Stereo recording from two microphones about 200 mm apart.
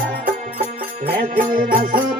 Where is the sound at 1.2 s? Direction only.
45° right (ahead or behind).